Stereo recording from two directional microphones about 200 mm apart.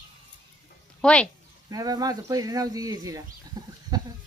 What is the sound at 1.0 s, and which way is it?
Speech, 5° left (ahead or behind).